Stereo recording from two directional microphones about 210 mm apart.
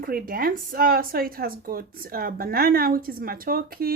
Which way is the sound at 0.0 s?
45° right (ahead or behind).